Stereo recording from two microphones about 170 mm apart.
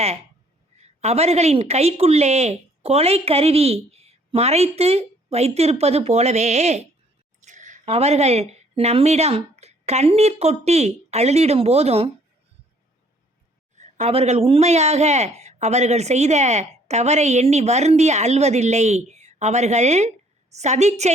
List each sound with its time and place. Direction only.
0.8 s speech: 40° right (ahead or behind)
13.7 s speech: 45° right (ahead or behind)